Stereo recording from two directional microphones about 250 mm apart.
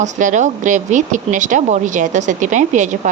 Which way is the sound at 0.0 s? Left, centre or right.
Right.